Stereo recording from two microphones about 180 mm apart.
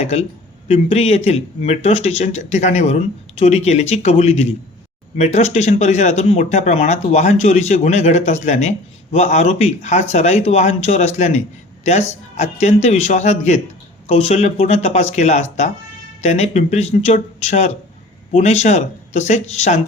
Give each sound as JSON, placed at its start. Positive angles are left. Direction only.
{"t": 0.0, "sound": "speech", "side_deg": 35}